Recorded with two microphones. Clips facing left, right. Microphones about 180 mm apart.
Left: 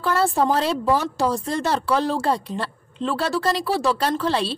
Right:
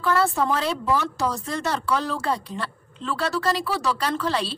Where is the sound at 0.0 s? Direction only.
30° left (ahead or behind).